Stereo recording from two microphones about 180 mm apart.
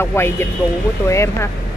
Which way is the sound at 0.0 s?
15° left (ahead or behind).